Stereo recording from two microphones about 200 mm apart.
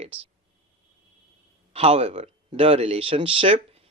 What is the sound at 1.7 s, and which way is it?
Speech, 30° right (ahead or behind).